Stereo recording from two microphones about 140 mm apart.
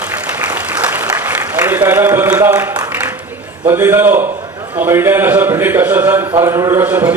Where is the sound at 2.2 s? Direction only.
20° right (ahead or behind).